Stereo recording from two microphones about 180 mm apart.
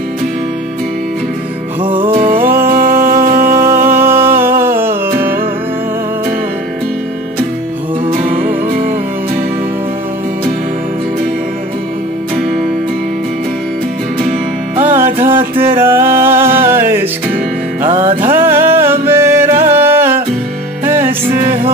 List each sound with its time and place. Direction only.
1.8 s music: 30° right (ahead or behind)
2.1 s music: 50° right (ahead or behind)
4.0 s music: 15° right (ahead or behind)
8.1 s music: 45° right (ahead or behind)
14.9 s music: 10° right (ahead or behind)
15.1 s music: 30° right (ahead or behind)
15.6 s music: 15° right (ahead or behind)
18.3 s music: 15° right (ahead or behind)